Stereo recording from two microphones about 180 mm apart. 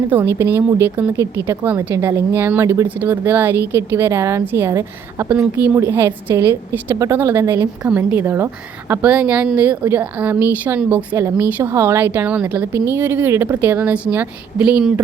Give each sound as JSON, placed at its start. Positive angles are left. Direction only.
{"t": 0.1, "sound": "a woman's voice", "side_deg": -15}